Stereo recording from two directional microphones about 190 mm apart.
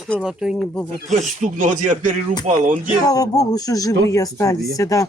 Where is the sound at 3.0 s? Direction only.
20° left (ahead or behind).